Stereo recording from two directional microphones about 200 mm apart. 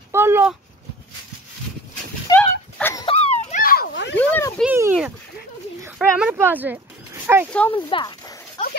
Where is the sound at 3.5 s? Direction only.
45° left (ahead or behind); by 4.2 s 60° left (ahead or behind).